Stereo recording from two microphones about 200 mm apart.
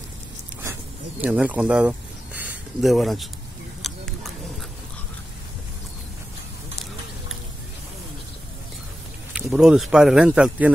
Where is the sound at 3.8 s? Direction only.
Centre (ahead or behind).